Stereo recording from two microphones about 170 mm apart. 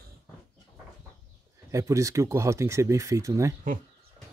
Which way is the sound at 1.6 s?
20° right (ahead or behind).